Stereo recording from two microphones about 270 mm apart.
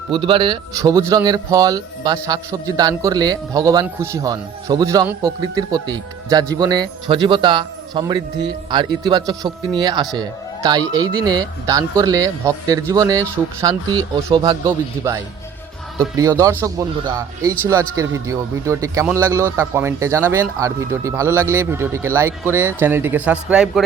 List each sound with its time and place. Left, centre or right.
0.1 s speech: centre